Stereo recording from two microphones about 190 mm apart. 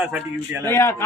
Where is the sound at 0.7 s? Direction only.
15° left (ahead or behind).